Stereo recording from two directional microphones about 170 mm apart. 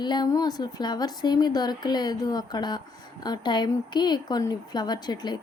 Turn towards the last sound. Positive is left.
turn(degrees=25)  # may be behind; listen again after turning